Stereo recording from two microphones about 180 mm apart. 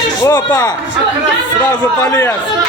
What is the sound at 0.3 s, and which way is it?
Speech, 20° left (ahead or behind).